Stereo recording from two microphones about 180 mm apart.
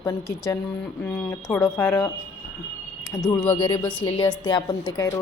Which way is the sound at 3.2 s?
15° left (ahead or behind).